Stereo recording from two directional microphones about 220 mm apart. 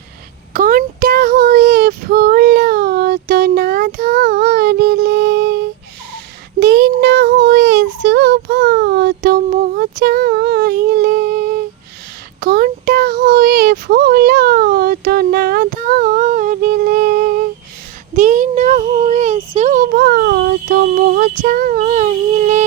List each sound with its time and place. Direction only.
0.5 s child singing: 40° right (ahead or behind)
6.6 s child singing: 45° right (ahead or behind)